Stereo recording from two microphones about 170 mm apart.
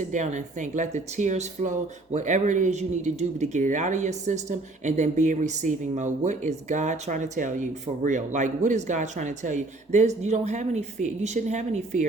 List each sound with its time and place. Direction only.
0.1 s speech: 45° right (ahead or behind)